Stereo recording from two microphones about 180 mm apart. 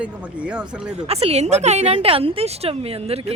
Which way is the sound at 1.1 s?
35° right (ahead or behind).